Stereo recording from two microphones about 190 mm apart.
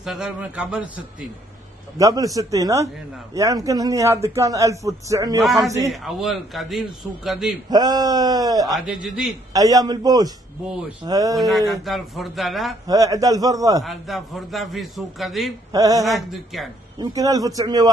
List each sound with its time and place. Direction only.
0.0 s a man's voice: 5° right (ahead or behind)
2.0 s a man's voice: 20° right (ahead or behind)
5.4 s a man's voice: centre (ahead or behind)
7.7 s a man's voice: 20° right (ahead or behind)
8.7 s a man's voice: 5° right (ahead or behind)
9.5 s a man's voice: 20° right (ahead or behind)
11.3 s a man's voice: centre (ahead or behind)
12.8 s a man's voice: 20° right (ahead or behind)
13.8 s a man's voice: centre (ahead or behind)
15.7 s a man's voice: 20° right (ahead or behind)
16.1 s a man's voice: centre (ahead or behind)
17.0 s a man's voice: 20° right (ahead or behind)